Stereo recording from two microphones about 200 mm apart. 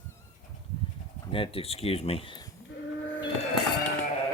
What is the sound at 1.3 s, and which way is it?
Speech, 25° left (ahead or behind).